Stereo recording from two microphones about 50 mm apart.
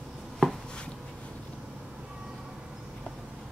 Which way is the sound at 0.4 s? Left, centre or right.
Centre.